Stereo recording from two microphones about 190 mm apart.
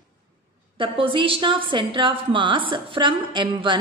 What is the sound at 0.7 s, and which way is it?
A woman's voice, 25° right (ahead or behind).